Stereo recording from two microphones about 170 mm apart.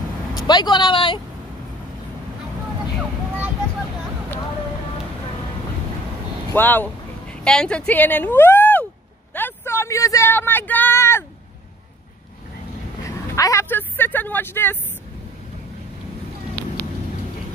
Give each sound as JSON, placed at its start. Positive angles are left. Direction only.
{"t": 0.5, "sound": "speech", "side_deg": 25}
{"t": 6.5, "sound": "a woman's voice", "side_deg": 10}
{"t": 9.3, "sound": "a sound", "side_deg": 15}
{"t": 13.0, "sound": "speech", "side_deg": 20}